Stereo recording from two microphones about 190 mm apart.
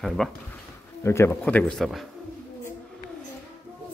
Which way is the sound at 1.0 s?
15° left (ahead or behind).